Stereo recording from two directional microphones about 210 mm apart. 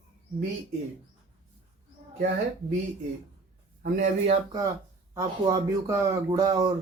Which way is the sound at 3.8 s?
35° right (ahead or behind).